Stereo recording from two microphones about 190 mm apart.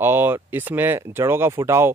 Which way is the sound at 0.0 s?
10° right (ahead or behind).